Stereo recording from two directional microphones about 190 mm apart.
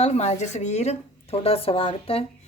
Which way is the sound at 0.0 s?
35° left (ahead or behind).